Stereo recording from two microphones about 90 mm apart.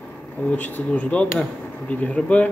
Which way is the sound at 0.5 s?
15° left (ahead or behind).